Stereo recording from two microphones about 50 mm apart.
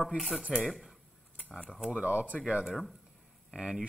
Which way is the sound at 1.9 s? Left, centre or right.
Right.